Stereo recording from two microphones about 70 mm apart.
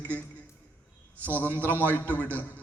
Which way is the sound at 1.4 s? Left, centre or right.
Right.